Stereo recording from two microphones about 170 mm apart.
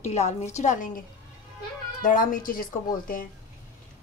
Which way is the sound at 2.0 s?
50° left (ahead or behind).